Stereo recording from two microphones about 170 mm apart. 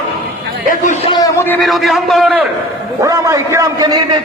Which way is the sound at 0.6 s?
50° left (ahead or behind).